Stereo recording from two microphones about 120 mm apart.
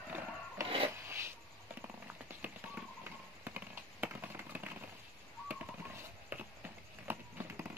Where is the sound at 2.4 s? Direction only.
15° right (ahead or behind).